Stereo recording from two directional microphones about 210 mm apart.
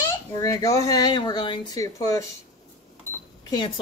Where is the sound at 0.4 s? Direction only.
15° left (ahead or behind).